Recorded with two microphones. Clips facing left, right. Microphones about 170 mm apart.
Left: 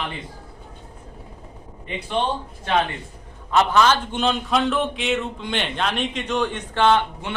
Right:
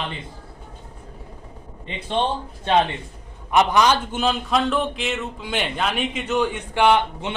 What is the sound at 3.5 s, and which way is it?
A man's voice, 15° right (ahead or behind).